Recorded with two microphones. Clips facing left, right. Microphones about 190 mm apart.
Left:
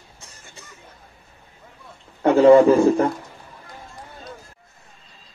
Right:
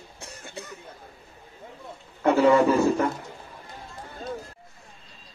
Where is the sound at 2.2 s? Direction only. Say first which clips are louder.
Left 7 dB; 40° left (ahead or behind).